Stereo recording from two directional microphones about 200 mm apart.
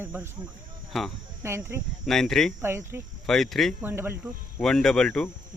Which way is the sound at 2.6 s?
10° right (ahead or behind).